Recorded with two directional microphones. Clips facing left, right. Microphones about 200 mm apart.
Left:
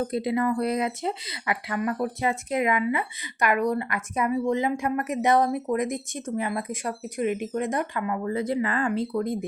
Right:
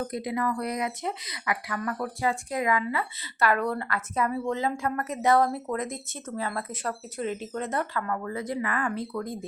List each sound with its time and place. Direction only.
0.0 s speech: 30° left (ahead or behind)